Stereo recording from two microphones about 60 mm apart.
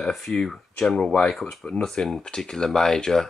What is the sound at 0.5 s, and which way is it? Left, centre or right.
Speech, centre.